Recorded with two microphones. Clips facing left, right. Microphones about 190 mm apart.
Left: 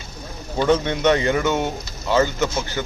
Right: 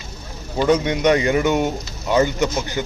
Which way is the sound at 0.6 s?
10° right (ahead or behind).